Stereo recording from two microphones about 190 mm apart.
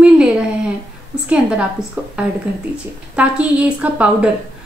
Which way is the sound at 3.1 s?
5° right (ahead or behind).